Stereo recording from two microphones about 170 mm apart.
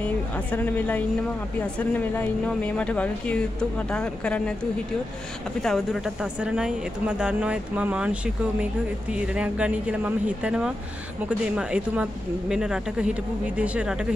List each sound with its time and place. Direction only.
0.0 s speech: 10° left (ahead or behind)
5.6 s speech: centre (ahead or behind)